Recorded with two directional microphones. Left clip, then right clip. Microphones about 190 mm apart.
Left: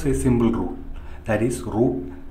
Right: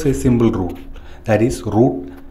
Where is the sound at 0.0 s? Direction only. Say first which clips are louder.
Right 5 dB; 20° right (ahead or behind).